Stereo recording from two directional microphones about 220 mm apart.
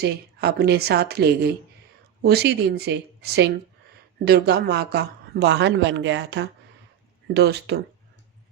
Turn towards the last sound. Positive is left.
turn(degrees=-50)  # may be behind; listen again after turning